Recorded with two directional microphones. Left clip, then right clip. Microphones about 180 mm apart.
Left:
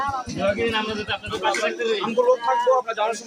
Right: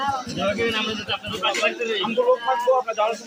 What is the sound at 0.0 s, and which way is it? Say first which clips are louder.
A man's voice: even; 15° left (ahead or behind).